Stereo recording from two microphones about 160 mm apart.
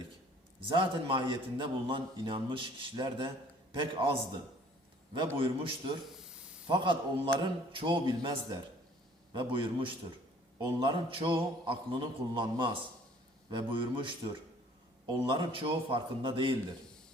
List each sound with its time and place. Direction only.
0.7 s a man's voice: 30° right (ahead or behind)
5.4 s a man's voice: 30° right (ahead or behind)